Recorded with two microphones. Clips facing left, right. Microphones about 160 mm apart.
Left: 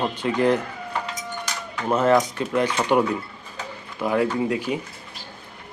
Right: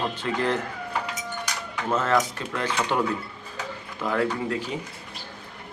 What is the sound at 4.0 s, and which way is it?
Speech, 15° left (ahead or behind).